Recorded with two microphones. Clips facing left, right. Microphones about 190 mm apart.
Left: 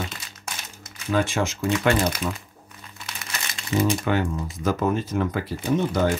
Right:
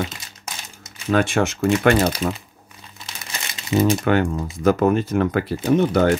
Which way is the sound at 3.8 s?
65° right (ahead or behind).